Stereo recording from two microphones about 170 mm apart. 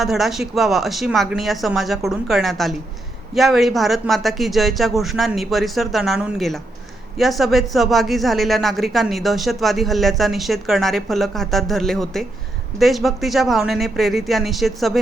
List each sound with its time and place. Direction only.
0.0 s speech: centre (ahead or behind)